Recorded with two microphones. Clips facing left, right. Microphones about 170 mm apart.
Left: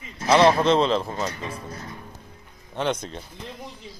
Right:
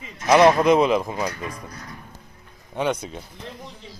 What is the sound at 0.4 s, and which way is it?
Speech, 10° right (ahead or behind).